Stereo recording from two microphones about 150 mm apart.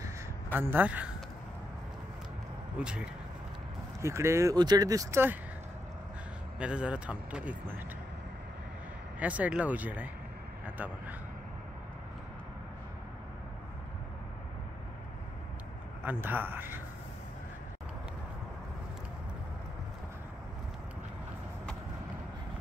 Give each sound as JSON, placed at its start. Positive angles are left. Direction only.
{"t": 0.6, "sound": "speech", "side_deg": -15}
{"t": 2.8, "sound": "speech", "side_deg": -10}
{"t": 4.0, "sound": "speech", "side_deg": -20}
{"t": 6.6, "sound": "speech", "side_deg": -5}
{"t": 9.2, "sound": "speech", "side_deg": -10}
{"t": 16.0, "sound": "speech", "side_deg": -10}